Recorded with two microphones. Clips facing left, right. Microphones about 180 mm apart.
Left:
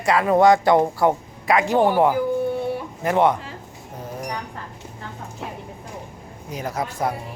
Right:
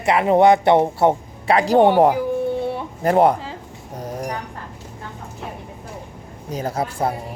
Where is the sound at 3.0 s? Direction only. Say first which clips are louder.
Right 4 dB; 35° right (ahead or behind).